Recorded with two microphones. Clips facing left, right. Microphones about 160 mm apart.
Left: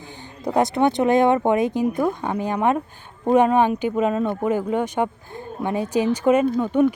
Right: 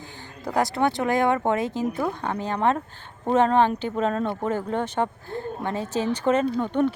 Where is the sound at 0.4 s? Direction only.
20° left (ahead or behind).